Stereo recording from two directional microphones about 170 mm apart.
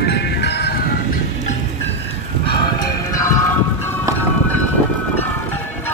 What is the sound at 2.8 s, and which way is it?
Music, 20° left (ahead or behind).